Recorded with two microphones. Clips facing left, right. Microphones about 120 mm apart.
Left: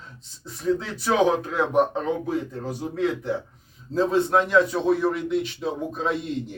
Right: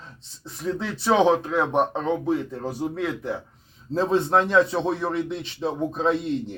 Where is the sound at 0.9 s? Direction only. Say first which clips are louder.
Right 4 dB; 30° right (ahead or behind).